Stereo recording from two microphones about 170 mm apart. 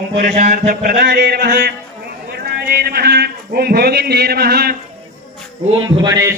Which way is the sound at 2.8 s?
70° right (ahead or behind).